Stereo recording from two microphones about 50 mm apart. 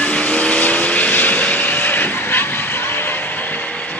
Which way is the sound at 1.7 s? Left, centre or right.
Left.